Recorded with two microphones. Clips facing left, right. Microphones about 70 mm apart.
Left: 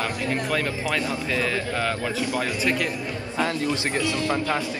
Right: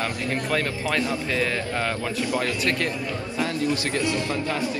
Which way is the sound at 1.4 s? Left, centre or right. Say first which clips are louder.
Even; centre.